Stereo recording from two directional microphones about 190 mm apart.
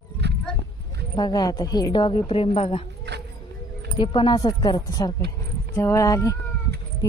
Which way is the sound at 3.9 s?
25° left (ahead or behind).